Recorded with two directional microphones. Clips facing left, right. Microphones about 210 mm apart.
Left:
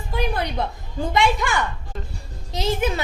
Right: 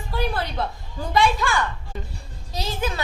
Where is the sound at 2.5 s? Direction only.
20° left (ahead or behind).